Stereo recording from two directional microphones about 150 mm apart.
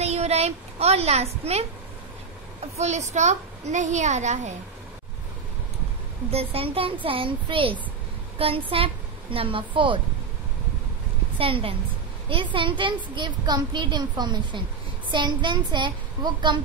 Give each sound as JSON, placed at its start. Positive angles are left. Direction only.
{"t": 0.0, "sound": "a woman's voice", "side_deg": -45}
{"t": 2.8, "sound": "a woman's voice", "side_deg": -50}
{"t": 6.3, "sound": "a woman's voice", "side_deg": -40}
{"t": 11.3, "sound": "a woman's voice", "side_deg": -35}